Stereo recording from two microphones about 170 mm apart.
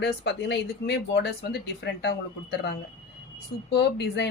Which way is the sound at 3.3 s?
75° left (ahead or behind).